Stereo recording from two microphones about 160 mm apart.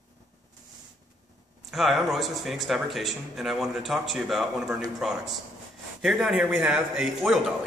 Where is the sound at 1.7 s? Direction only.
Centre (ahead or behind).